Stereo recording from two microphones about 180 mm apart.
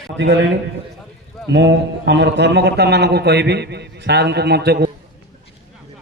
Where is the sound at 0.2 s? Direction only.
85° right.